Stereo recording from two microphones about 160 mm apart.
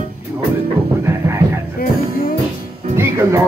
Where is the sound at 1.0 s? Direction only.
15° right (ahead or behind).